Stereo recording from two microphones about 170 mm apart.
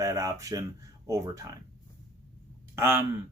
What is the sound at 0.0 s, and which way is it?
Speech, 20° right (ahead or behind).